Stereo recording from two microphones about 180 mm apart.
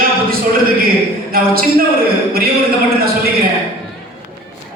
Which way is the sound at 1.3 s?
55° right (ahead or behind).